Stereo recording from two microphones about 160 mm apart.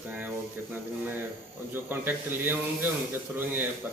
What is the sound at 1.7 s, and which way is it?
Speech, 10° right (ahead or behind).